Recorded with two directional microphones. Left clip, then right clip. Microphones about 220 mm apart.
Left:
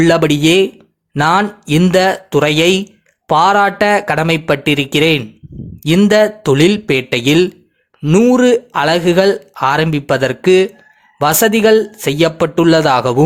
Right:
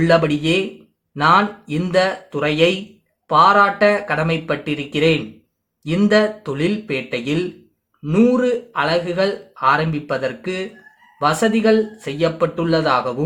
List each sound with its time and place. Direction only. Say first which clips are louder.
0.0 s speech: left 5 dB; 45° left (ahead or behind)